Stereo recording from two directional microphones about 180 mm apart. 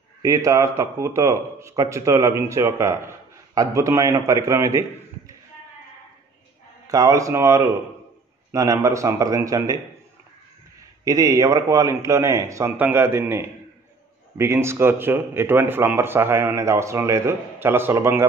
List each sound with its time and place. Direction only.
0.2 s speech: 20° right (ahead or behind)
6.9 s speech: 20° right (ahead or behind)
11.1 s speech: 20° right (ahead or behind)